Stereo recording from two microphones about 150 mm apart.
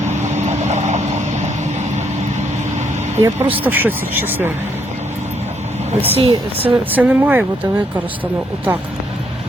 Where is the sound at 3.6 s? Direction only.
10° right (ahead or behind).